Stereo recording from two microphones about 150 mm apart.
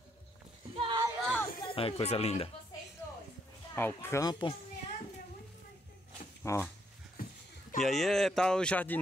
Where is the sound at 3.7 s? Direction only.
15° left (ahead or behind).